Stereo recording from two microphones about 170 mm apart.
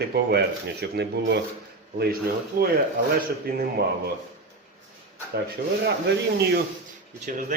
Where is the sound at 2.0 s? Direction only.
60° right (ahead or behind).